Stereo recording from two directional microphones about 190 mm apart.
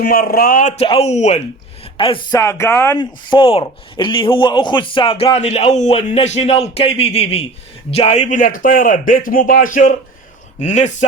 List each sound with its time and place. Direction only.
0.0 s speech: 50° left (ahead or behind)
0.8 s a man's voice: 30° left (ahead or behind); by 3.0 s 10° left (ahead or behind)
3.0 s a man's voice: 25° left (ahead or behind)